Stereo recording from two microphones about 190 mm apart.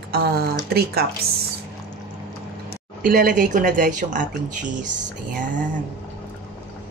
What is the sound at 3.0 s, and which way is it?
Speech, 45° right (ahead or behind).